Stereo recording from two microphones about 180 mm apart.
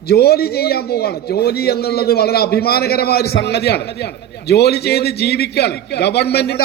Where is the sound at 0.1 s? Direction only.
60° left (ahead or behind).